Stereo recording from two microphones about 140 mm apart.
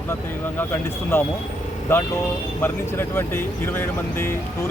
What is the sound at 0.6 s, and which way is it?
Speech, 15° left (ahead or behind).